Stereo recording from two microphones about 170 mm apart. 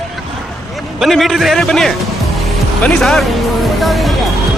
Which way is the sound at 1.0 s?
Centre (ahead or behind).